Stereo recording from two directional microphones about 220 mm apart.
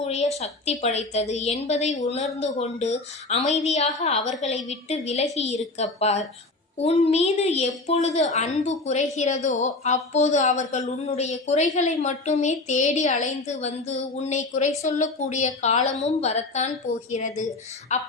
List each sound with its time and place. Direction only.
0.0 s a woman's voice: 30° left (ahead or behind)